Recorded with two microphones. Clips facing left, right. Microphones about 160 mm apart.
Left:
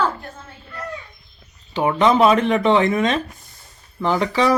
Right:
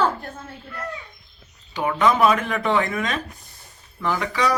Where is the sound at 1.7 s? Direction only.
25° left (ahead or behind).